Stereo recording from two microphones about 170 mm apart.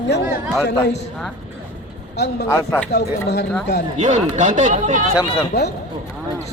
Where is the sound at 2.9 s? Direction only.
80° left.